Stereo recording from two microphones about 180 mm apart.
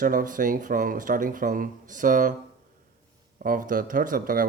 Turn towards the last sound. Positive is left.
turn(degrees=-50)  # may be behind; listen again after turning